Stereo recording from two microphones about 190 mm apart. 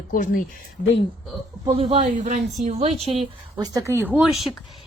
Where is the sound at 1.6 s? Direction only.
30° right (ahead or behind).